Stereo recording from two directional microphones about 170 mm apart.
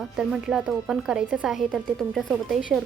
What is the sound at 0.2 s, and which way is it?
A woman's voice, 5° right (ahead or behind).